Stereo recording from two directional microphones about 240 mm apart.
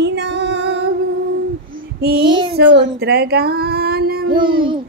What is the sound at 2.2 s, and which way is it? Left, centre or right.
Child singing, centre.